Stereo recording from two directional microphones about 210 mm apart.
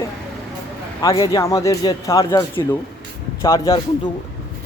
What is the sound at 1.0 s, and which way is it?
Speech, 20° left (ahead or behind).